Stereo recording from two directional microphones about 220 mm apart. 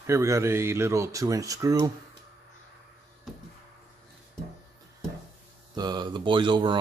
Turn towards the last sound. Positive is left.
turn(degrees=-20)  # may be behind; listen again after turning